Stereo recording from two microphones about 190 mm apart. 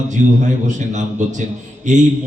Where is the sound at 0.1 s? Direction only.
40° right (ahead or behind).